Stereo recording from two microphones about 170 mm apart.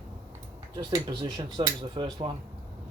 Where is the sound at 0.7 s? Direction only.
25° right (ahead or behind).